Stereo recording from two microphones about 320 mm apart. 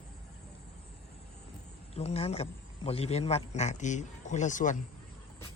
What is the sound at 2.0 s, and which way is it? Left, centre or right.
A man's voice, centre.